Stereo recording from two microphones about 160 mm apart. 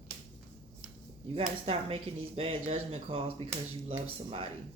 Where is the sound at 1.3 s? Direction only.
35° right (ahead or behind).